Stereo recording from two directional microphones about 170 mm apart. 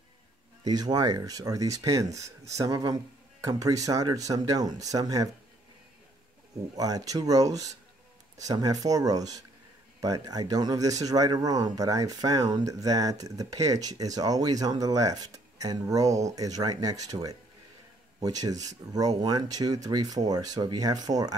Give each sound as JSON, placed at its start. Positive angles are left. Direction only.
{"t": 0.7, "sound": "speech", "side_deg": -25}
{"t": 6.8, "sound": "speech", "side_deg": -20}